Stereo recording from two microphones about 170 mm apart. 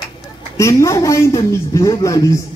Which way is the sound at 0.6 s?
20° left (ahead or behind).